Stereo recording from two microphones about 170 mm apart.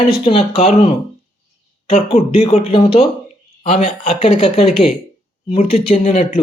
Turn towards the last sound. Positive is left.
turn(degrees=40)  # may be behind; listen again after turning